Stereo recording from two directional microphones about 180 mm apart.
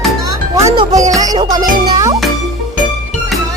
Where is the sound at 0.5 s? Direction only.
20° right (ahead or behind).